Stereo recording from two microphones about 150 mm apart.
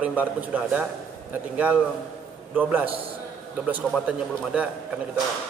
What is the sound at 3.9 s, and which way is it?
Speech, 5° right (ahead or behind).